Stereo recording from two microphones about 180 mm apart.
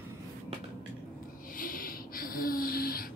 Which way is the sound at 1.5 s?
50° left (ahead or behind).